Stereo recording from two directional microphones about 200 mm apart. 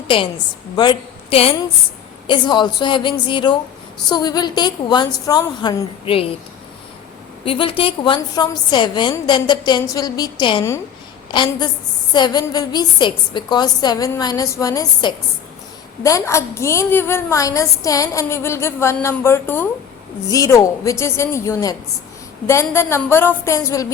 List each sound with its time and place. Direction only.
0.1 s a woman's voice: 25° left (ahead or behind)
7.4 s a woman's voice: 25° left (ahead or behind)